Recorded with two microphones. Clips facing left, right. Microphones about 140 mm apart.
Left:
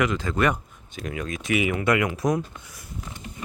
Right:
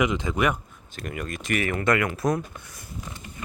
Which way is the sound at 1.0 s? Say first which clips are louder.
Left 2 dB; centre (ahead or behind).